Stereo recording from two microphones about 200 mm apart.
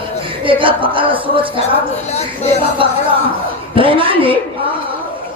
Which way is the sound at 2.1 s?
35° left (ahead or behind).